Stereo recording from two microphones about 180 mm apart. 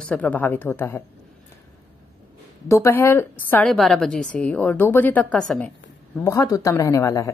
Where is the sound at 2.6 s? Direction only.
15° left (ahead or behind).